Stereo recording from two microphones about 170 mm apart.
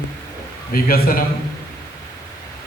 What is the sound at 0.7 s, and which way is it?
Speech, 60° left (ahead or behind).